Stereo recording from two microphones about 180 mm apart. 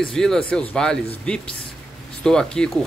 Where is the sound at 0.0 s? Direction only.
5° left (ahead or behind).